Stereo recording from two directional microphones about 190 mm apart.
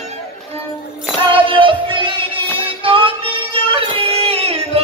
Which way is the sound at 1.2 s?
25° right (ahead or behind).